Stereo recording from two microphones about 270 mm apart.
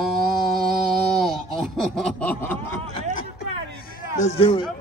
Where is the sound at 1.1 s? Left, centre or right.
Centre.